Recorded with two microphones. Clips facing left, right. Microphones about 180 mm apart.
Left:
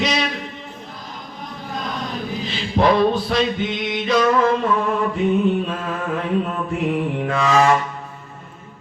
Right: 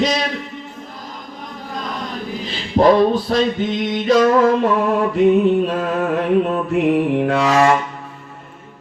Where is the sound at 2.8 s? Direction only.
45° right (ahead or behind).